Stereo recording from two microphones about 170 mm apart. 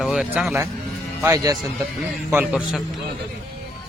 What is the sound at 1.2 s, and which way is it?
Speech, 20° right (ahead or behind).